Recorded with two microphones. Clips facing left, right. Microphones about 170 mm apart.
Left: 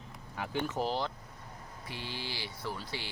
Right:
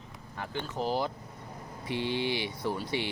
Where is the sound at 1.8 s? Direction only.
20° right (ahead or behind).